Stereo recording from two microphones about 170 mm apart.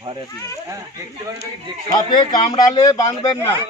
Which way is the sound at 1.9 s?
25° left (ahead or behind).